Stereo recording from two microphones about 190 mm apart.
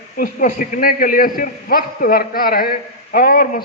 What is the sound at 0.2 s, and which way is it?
A man's voice, 45° left (ahead or behind).